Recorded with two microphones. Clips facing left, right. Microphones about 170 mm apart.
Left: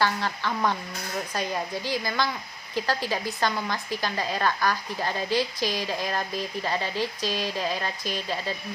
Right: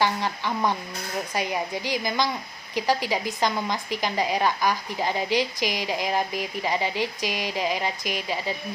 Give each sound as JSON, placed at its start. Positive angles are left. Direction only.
{"t": 0.0, "sound": "a woman's voice", "side_deg": -15}